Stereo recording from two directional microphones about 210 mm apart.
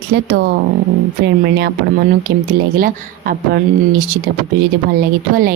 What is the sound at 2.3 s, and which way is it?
Speech, 50° right (ahead or behind).